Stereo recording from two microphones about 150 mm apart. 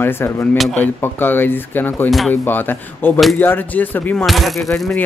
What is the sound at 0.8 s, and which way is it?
Speech, 15° left (ahead or behind).